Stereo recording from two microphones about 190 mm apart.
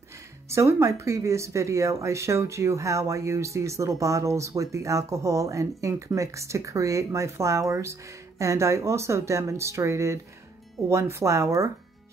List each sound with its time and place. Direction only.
0.5 s speech: 15° right (ahead or behind)